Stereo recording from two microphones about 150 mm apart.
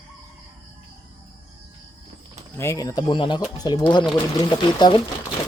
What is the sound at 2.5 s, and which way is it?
Speech, 20° left (ahead or behind).